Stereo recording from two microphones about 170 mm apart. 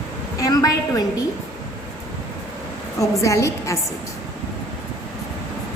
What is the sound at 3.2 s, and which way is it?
Speech, 15° left (ahead or behind).